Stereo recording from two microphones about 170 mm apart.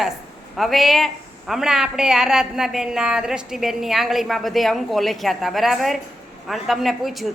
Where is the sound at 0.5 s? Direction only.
Centre (ahead or behind).